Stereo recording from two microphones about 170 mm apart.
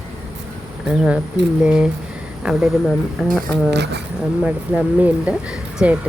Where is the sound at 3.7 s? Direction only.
85° right.